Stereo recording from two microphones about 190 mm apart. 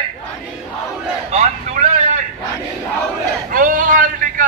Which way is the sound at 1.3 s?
35° right (ahead or behind).